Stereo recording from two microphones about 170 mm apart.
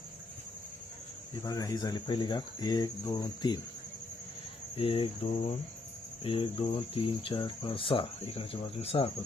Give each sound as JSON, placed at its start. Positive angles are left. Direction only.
{"t": 1.5, "sound": "speech", "side_deg": 20}
{"t": 4.8, "sound": "speech", "side_deg": 35}